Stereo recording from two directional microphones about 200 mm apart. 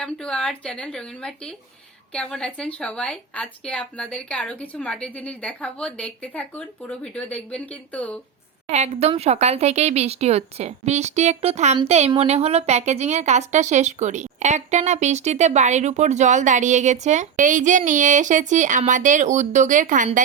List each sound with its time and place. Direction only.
0.0 s speech: 5° left (ahead or behind)
8.7 s a woman's voice: 30° right (ahead or behind)